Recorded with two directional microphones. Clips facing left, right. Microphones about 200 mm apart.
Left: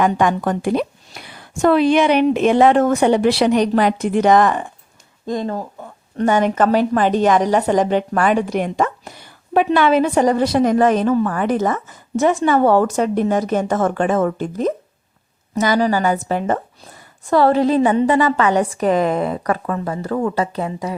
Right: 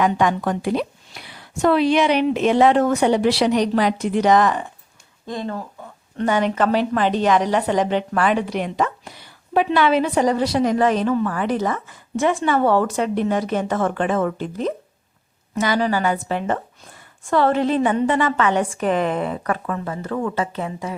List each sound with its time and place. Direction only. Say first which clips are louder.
0.0 s a woman's voice: left 2 dB; 50° left (ahead or behind)